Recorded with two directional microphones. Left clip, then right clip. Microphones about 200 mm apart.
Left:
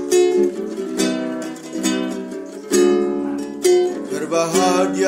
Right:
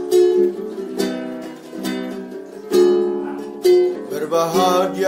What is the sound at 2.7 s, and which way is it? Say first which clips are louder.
Music: right 1 dB; 30° left (ahead or behind).